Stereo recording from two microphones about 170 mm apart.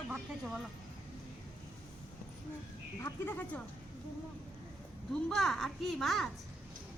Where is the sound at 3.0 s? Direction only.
10° left (ahead or behind).